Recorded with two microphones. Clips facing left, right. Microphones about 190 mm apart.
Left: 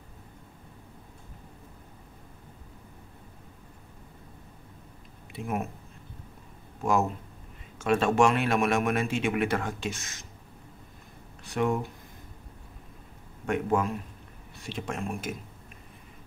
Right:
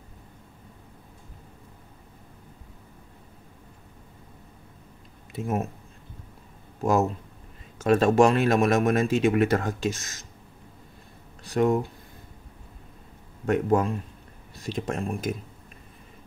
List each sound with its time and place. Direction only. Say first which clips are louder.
5.3 s speech: right 4 dB; 40° right (ahead or behind)
6.8 s speech: right 3 dB; 40° right (ahead or behind)
11.4 s speech: right 5 dB; 40° right (ahead or behind)
13.5 s speech: right 4 dB; 35° right (ahead or behind)